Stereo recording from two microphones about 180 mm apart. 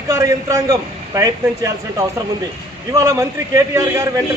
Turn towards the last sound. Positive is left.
turn(degrees=-20)  # may be behind; listen again after turning